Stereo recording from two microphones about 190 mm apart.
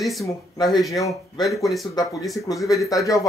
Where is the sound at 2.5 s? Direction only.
20° left (ahead or behind).